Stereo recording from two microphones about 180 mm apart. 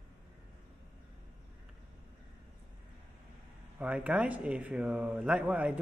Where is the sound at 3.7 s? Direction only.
10° right (ahead or behind).